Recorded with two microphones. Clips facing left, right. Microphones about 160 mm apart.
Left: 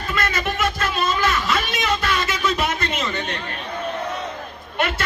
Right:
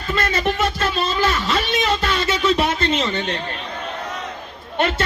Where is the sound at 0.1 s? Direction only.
30° right (ahead or behind).